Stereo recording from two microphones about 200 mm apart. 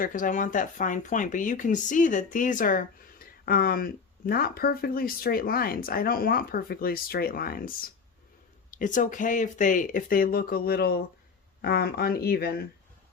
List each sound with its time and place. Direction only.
0.0 s speech: 40° left (ahead or behind)